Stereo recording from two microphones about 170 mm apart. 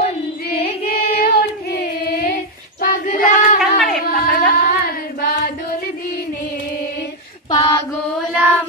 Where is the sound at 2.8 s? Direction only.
50° left (ahead or behind).